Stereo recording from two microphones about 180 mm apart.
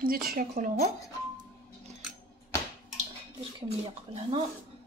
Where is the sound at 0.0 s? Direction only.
55° right (ahead or behind).